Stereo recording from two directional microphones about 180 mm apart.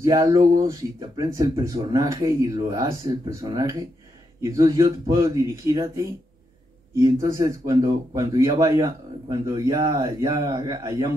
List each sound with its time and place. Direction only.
0.0 s speech: 15° right (ahead or behind)